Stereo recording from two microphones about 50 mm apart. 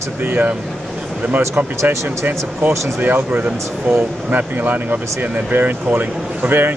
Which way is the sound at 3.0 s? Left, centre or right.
Right.